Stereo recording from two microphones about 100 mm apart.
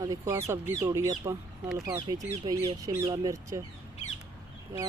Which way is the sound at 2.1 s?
35° right (ahead or behind).